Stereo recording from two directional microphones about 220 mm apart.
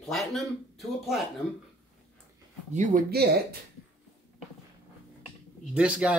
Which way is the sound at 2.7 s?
35° right (ahead or behind).